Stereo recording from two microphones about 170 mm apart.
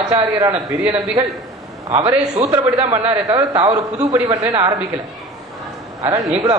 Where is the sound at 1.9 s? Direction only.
40° right (ahead or behind).